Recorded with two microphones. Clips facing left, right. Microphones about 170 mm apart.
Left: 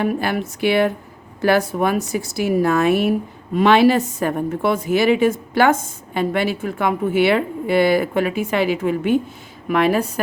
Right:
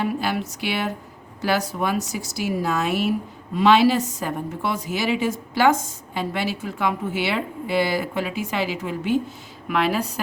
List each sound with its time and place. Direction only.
0.0 s a woman's voice: 55° left (ahead or behind)